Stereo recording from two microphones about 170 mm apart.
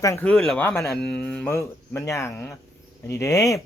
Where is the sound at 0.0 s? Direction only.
20° left (ahead or behind).